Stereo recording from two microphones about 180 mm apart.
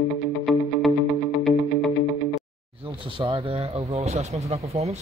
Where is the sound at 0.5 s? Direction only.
Centre (ahead or behind).